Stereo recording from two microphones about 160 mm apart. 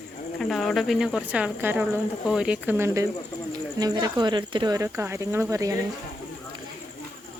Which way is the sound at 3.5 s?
25° right (ahead or behind).